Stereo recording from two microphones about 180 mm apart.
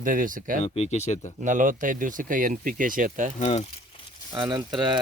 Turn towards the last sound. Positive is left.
turn(degrees=-25)  # may be behind; listen again after turning